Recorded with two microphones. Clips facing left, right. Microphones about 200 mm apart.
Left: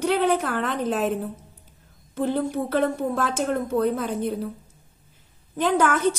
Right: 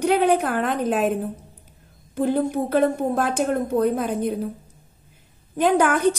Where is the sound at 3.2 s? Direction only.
15° right (ahead or behind).